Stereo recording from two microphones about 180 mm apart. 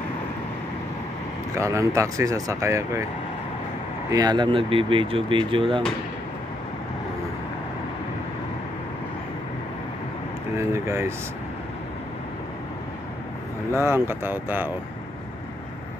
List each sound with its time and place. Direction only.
1.5 s speech: 15° right (ahead or behind)
4.1 s speech: 20° right (ahead or behind)
10.6 s speech: 15° right (ahead or behind)
13.7 s speech: 15° right (ahead or behind)